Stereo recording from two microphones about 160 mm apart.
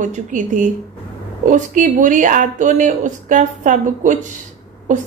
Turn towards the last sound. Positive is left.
turn(degrees=-50)  # may be behind; listen again after turning